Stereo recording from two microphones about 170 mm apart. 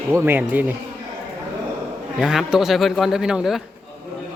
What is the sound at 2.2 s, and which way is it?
Speech, centre (ahead or behind).